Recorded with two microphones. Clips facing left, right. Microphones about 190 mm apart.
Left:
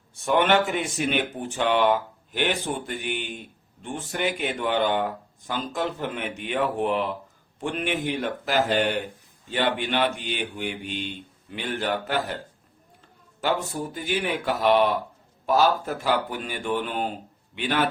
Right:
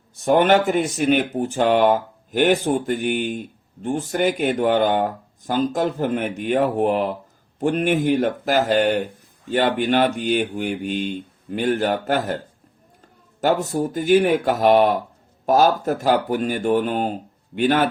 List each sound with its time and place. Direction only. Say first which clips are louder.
0.3 s speech: right 5 dB; 40° right (ahead or behind)
13.4 s speech: right 7 dB; 45° right (ahead or behind)